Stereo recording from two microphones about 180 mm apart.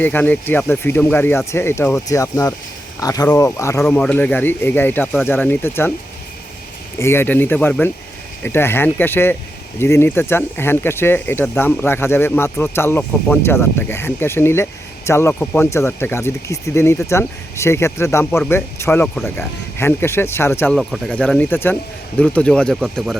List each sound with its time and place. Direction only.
0.0 s speech: 10° left (ahead or behind)
7.0 s speech: 15° left (ahead or behind)